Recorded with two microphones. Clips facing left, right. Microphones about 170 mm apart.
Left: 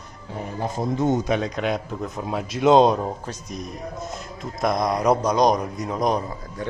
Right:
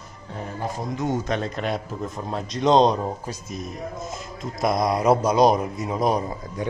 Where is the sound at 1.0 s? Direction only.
20° left (ahead or behind).